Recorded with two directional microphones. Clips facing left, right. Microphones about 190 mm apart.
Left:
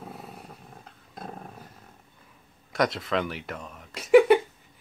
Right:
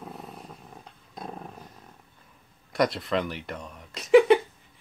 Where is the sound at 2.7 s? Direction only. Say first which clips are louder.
Right 1 dB; centre (ahead or behind).